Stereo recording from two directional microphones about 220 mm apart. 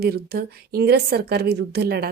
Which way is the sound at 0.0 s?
45° right (ahead or behind).